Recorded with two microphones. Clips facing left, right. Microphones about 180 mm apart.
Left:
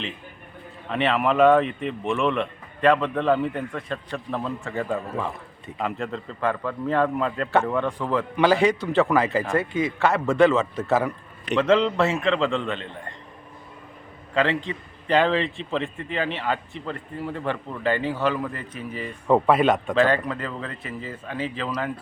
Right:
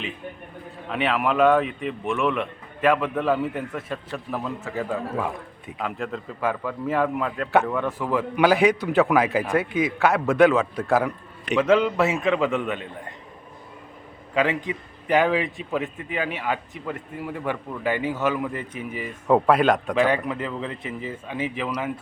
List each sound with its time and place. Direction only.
0.9 s a man's voice: centre (ahead or behind)
9.0 s a man's voice: centre (ahead or behind)
14.3 s a man's voice: 10° right (ahead or behind)
19.0 s a man's voice: centre (ahead or behind)
19.9 s a man's voice: 15° right (ahead or behind)